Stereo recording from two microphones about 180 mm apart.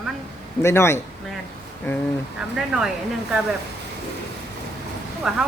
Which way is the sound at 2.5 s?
5° right (ahead or behind).